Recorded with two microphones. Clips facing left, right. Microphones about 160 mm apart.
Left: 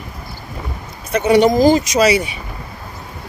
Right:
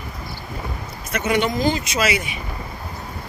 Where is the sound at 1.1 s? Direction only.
35° left (ahead or behind).